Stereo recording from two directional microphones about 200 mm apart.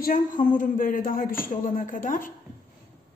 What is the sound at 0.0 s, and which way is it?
A man's voice, 40° left (ahead or behind).